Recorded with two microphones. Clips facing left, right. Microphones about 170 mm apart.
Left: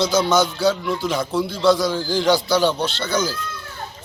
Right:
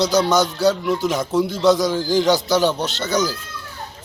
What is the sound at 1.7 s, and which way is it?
A man's voice, 15° right (ahead or behind).